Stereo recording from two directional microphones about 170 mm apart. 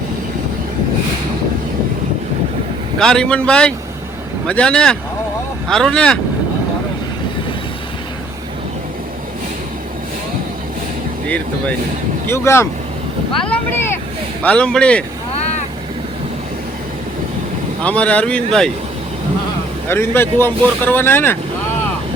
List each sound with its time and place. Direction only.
3.0 s speech: 5° left (ahead or behind)
12.3 s speech: 15° left (ahead or behind)
14.4 s speech: 5° left (ahead or behind)
17.8 s speech: 10° left (ahead or behind)
19.9 s speech: 15° left (ahead or behind)